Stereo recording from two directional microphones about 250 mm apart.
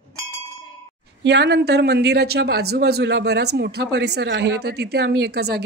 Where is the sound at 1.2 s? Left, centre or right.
Right.